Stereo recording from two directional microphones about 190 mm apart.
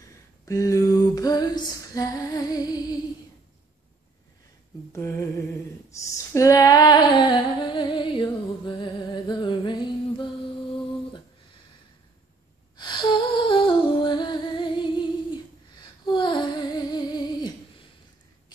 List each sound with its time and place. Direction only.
0.5 s female singing: 20° left (ahead or behind)
4.9 s a sound: 10° left (ahead or behind)
5.9 s female singing: 15° left (ahead or behind)
12.7 s humming: 25° left (ahead or behind)
16.2 s humming: 25° left (ahead or behind)